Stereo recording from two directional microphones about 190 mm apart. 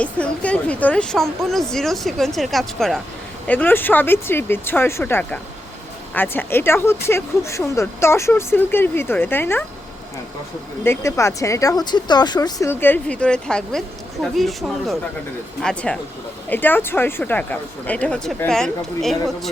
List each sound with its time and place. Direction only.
0.0 s a woman's voice: 5° left (ahead or behind)
10.8 s a woman's voice: 15° left (ahead or behind)